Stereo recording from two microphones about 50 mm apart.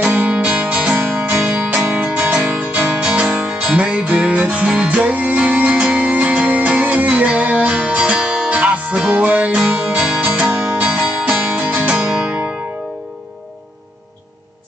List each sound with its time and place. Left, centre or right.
0.1 s music: right
9.8 s music: centre
10.2 s music: right
11.3 s music: right